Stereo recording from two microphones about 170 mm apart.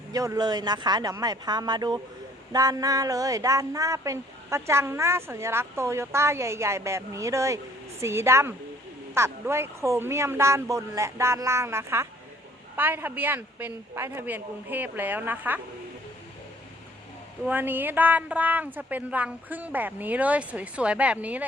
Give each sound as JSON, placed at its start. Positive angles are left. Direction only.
{"t": 0.1, "sound": "speech", "side_deg": -20}
{"t": 17.4, "sound": "speech", "side_deg": -10}